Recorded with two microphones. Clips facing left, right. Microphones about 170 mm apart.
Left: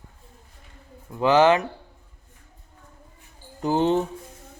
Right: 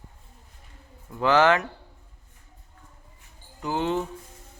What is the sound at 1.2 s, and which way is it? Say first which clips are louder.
Speech: left 3 dB; 20° left (ahead or behind).